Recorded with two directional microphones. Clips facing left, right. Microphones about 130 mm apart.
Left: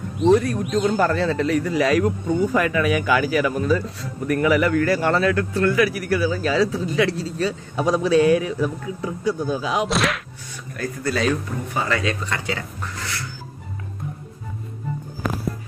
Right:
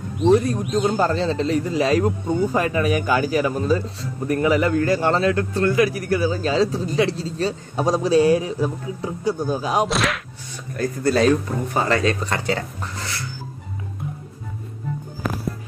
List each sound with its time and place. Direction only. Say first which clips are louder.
0.4 s a man's voice: even; 20° right (ahead or behind); by 9.8 s 40° right (ahead or behind)
9.8 s speech: left 1 dB; centre (ahead or behind)
10.8 s speech: right 5 dB; 35° right (ahead or behind)